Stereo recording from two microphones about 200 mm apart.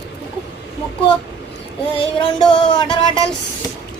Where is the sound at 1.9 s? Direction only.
25° left (ahead or behind).